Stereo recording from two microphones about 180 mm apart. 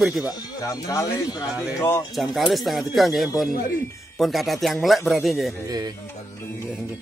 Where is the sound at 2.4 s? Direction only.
Centre (ahead or behind).